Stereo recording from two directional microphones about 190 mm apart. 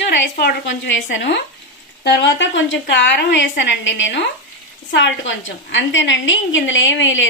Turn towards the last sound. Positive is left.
turn(degrees=75)  # may be behind; listen again after turning